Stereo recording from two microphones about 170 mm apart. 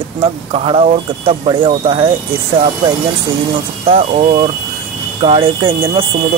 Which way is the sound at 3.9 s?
40° right (ahead or behind).